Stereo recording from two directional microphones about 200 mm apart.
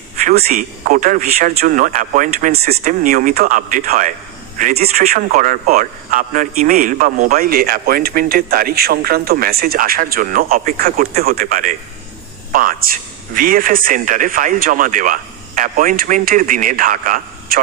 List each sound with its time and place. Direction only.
0.2 s a man's voice: 40° right (ahead or behind)
4.9 s a man's voice: 35° right (ahead or behind)